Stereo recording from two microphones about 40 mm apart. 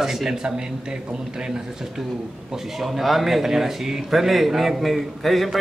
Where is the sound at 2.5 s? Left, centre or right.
Centre.